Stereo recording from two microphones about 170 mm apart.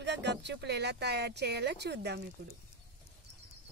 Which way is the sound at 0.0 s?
90° right.